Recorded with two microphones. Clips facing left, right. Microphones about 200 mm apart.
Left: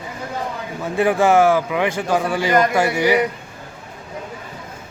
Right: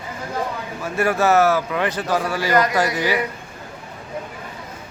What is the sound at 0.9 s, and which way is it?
Speech, 15° left (ahead or behind).